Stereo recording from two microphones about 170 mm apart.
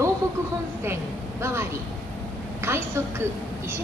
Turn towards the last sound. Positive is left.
turn(degrees=-15)  # may be behind; listen again after turning